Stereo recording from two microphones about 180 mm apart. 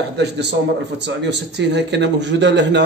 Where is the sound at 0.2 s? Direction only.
70° right (ahead or behind).